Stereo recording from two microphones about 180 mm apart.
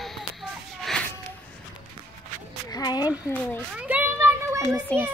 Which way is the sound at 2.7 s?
20° left (ahead or behind).